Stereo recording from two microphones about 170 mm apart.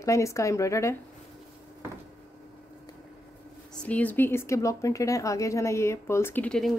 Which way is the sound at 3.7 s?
10° left (ahead or behind).